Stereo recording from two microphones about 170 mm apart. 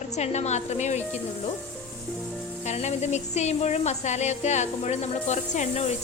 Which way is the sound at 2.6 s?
40° left (ahead or behind).